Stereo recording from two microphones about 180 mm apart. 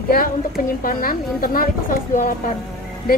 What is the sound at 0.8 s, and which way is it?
Speech, 50° left (ahead or behind).